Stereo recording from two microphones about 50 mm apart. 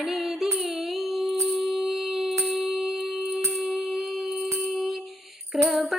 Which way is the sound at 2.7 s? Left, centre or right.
Centre.